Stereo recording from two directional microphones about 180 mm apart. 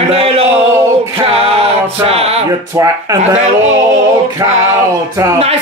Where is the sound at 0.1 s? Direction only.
35° right (ahead or behind).